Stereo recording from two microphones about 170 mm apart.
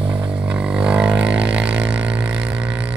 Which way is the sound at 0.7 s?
5° right (ahead or behind).